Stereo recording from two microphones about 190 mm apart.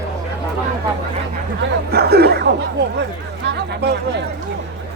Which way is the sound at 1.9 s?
55° right (ahead or behind).